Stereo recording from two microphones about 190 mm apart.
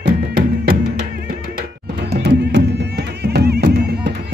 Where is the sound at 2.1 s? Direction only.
60° right (ahead or behind).